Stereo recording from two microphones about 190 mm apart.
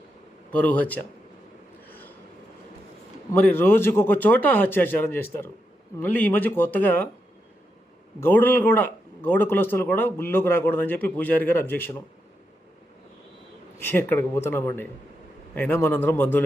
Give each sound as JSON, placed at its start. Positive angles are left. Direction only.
{"t": 0.5, "sound": "speech", "side_deg": 10}
{"t": 1.9, "sound": "a sound", "side_deg": 10}
{"t": 3.3, "sound": "speech", "side_deg": 10}
{"t": 8.2, "sound": "speech", "side_deg": 10}
{"t": 13.7, "sound": "speech", "side_deg": 10}